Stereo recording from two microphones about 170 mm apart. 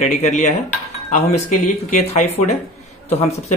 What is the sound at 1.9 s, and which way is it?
A man's voice, 40° left (ahead or behind).